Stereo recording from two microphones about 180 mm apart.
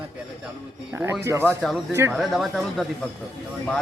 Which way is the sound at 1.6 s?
Centre (ahead or behind).